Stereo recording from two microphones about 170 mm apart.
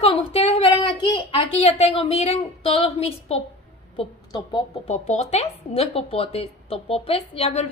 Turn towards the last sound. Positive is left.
turn(degrees=35)  # may be behind; listen again after turning